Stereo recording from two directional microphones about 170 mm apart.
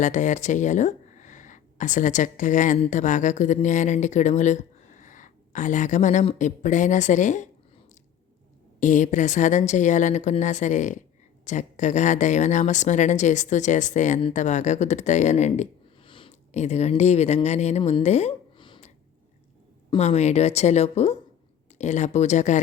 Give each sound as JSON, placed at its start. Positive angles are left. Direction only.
{"t": 0.0, "sound": "speech", "side_deg": 45}
{"t": 8.8, "sound": "speech", "side_deg": 45}
{"t": 16.0, "sound": "speech", "side_deg": 30}
{"t": 18.5, "sound": "a sound", "side_deg": 30}
{"t": 20.0, "sound": "speech", "side_deg": 40}